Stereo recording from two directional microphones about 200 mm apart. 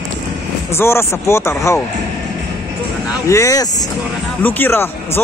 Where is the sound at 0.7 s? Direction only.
15° left (ahead or behind).